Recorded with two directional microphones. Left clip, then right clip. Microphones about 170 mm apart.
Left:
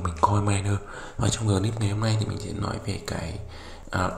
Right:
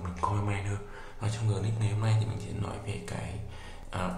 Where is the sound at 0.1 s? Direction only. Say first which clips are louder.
Left 8 dB; 35° left (ahead or behind).